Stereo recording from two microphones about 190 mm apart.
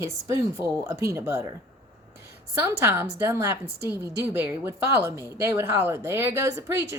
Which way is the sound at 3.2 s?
15° right (ahead or behind).